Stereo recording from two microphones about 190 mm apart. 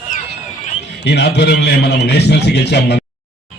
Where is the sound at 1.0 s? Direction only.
60° left (ahead or behind).